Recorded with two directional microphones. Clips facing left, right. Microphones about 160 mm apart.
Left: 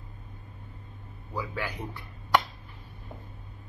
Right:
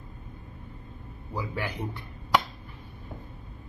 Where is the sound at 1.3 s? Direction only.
25° right (ahead or behind).